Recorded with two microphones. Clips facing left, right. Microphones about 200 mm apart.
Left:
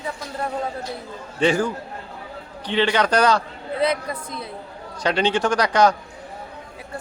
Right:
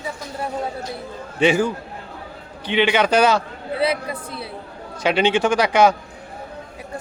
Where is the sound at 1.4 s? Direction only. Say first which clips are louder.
Right 2 dB; 10° right (ahead or behind).